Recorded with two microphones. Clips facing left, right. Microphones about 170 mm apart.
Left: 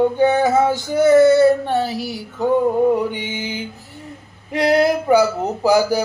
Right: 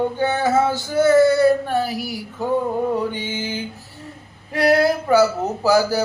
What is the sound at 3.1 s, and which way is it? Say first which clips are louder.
Speech: even; 15° left (ahead or behind).